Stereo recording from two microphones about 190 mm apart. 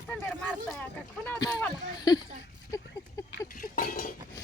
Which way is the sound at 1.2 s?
20° left (ahead or behind).